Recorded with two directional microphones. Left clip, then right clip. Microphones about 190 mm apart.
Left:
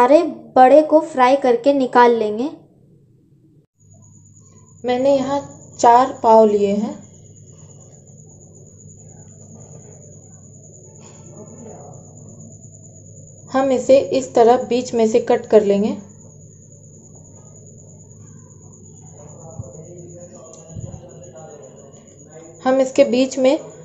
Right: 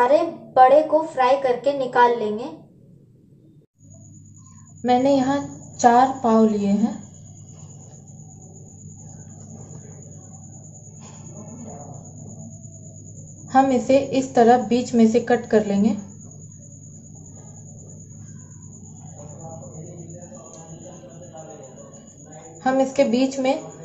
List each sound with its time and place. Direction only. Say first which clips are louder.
0.0 s a woman's voice: left 5 dB; 40° left (ahead or behind)
4.8 s a woman's voice: left 2 dB; 40° left (ahead or behind)
13.5 s a woman's voice: left 3 dB; 40° left (ahead or behind)
22.6 s a woman's voice: left 5 dB; 45° left (ahead or behind)